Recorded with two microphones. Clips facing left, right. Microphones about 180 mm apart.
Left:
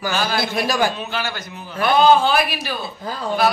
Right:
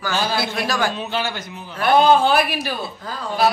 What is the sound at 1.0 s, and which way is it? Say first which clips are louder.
Speech: right 2 dB; 25° right (ahead or behind).